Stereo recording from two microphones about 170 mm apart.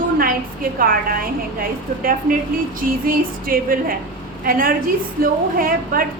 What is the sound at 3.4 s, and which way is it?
A woman's voice, 55° right (ahead or behind).